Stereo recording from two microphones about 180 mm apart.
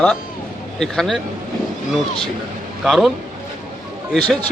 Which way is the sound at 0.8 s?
5° left (ahead or behind).